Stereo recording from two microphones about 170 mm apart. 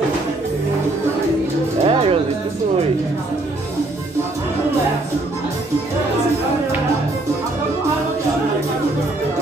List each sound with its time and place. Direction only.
1.9 s music: 30° right (ahead or behind)